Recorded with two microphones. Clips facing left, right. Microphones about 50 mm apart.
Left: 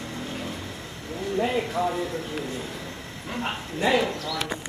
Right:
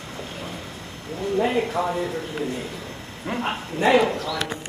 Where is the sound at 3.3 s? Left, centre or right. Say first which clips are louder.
Right 4 dB; right.